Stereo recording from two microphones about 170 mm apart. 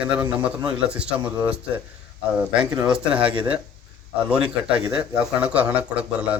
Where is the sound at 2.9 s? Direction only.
5° right (ahead or behind).